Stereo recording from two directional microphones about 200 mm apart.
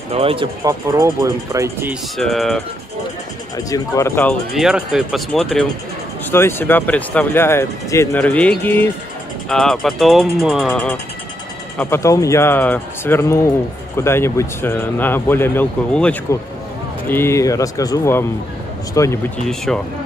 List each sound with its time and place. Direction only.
0.1 s speech: 30° right (ahead or behind)
0.7 s speech: 15° right (ahead or behind)
2.1 s speech: centre (ahead or behind)
3.5 s speech: 15° left (ahead or behind); by 10.7 s centre (ahead or behind)
10.7 s speech: 10° left (ahead or behind)
19.4 s speech: centre (ahead or behind)